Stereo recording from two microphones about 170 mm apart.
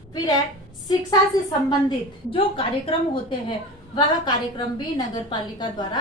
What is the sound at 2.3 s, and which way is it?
A woman's voice, 30° left (ahead or behind).